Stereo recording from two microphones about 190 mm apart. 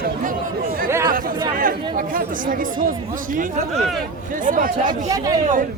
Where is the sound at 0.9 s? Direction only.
15° right (ahead or behind).